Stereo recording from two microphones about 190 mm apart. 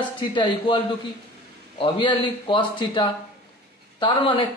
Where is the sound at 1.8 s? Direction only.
25° left (ahead or behind).